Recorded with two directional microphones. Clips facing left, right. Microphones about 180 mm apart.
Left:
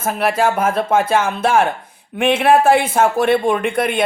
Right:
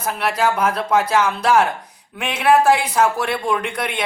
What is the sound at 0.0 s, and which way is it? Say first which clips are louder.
A man's voice: left 3 dB; 25° left (ahead or behind).